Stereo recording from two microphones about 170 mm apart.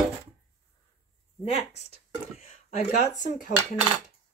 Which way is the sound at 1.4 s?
40° left (ahead or behind).